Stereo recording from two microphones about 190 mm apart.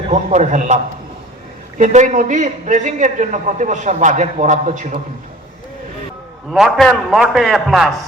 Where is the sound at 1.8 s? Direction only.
40° right (ahead or behind).